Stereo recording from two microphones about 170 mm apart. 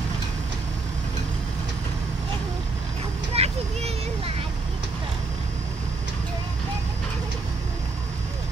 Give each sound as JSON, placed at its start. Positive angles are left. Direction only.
{"t": 3.3, "sound": "vehicle", "side_deg": -35}